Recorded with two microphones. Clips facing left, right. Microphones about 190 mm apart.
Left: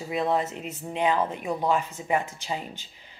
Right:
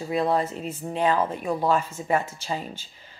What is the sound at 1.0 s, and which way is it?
A woman's voice, 20° left (ahead or behind).